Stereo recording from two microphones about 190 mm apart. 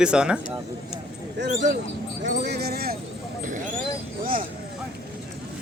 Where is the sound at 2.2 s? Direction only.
60° right (ahead or behind).